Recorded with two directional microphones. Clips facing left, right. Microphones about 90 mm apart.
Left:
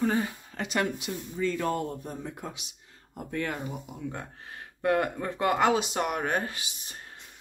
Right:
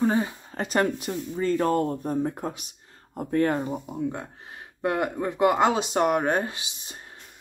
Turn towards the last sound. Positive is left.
turn(degrees=-25)  # may be behind; listen again after turning